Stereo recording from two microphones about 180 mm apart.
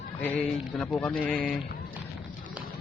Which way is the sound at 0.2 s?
5° left (ahead or behind).